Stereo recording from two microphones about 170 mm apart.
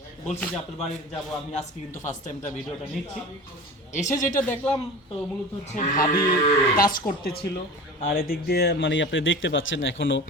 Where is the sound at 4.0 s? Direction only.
10° left (ahead or behind).